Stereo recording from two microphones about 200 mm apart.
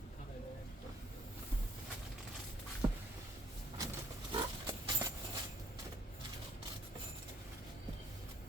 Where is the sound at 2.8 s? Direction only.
20° right (ahead or behind).